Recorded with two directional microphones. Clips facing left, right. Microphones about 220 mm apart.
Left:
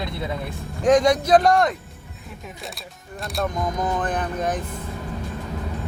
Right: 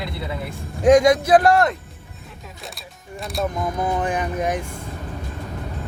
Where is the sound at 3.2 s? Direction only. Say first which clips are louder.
Right 1 dB; centre (ahead or behind).